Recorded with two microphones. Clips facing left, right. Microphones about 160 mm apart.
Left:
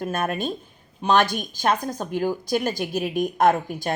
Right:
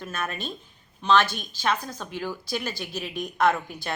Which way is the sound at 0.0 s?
50° left (ahead or behind).